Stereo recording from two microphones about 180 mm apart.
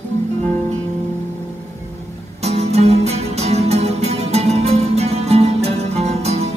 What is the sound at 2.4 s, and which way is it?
Music, 35° right (ahead or behind).